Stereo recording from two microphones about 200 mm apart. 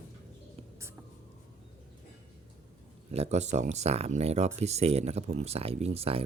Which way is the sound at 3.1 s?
30° right (ahead or behind).